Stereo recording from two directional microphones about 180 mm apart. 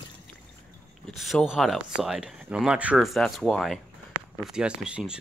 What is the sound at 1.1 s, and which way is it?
Speech, centre (ahead or behind).